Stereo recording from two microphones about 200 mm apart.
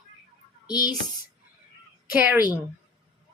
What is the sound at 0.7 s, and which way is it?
Speech, 20° left (ahead or behind).